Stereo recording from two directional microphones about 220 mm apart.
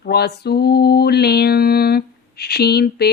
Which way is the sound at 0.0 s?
45° left (ahead or behind).